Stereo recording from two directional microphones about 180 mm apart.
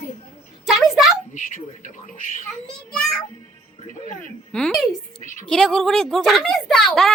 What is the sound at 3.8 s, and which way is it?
Speech, 45° left (ahead or behind).